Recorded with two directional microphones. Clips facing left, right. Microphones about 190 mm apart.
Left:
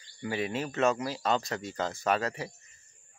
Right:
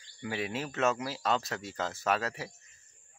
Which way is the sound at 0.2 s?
Centre (ahead or behind).